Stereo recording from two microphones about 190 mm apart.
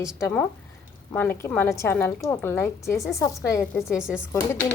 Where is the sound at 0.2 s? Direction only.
10° left (ahead or behind).